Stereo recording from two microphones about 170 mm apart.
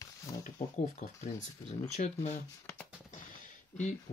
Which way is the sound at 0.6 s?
55° left (ahead or behind).